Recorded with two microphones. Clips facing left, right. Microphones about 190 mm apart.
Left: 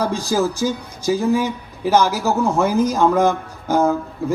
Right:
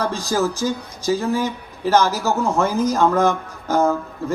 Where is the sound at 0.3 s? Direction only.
15° left (ahead or behind).